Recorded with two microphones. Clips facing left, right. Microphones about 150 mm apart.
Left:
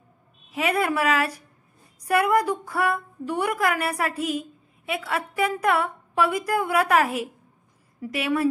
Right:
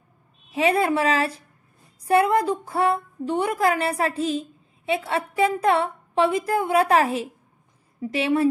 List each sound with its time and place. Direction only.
0.5 s a woman's voice: 25° right (ahead or behind)